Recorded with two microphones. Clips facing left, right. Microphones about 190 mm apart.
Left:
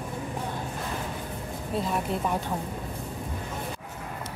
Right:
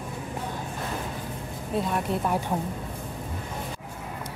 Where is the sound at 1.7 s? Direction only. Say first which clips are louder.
Right 2 dB; centre (ahead or behind).